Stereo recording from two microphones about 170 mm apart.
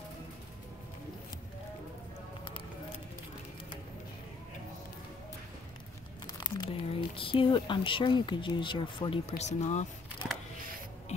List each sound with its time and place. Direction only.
6.2 s speech: 25° left (ahead or behind)
9.4 s speech: 45° left (ahead or behind)